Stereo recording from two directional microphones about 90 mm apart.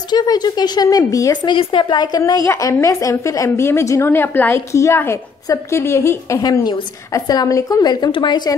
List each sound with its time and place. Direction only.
0.1 s speech: 50° left (ahead or behind)
1.4 s speech: 65° left (ahead or behind)
2.1 s speech: 45° left (ahead or behind)
2.4 s a woman's voice: 35° left (ahead or behind); by 8.1 s 50° left (ahead or behind)
8.1 s speech: 65° left (ahead or behind)